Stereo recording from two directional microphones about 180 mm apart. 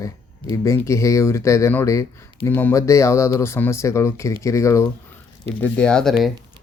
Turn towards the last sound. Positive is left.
turn(degrees=0)  # may be behind; listen again after turning